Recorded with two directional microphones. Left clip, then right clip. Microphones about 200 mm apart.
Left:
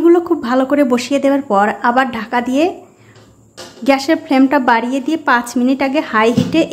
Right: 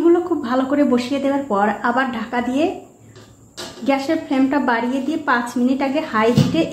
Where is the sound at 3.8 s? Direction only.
40° left (ahead or behind).